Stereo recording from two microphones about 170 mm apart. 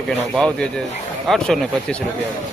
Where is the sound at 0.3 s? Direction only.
5° left (ahead or behind).